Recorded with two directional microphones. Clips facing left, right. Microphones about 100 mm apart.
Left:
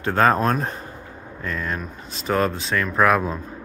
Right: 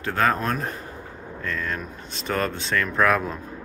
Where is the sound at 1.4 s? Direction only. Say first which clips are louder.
Left 2 dB; 15° left (ahead or behind).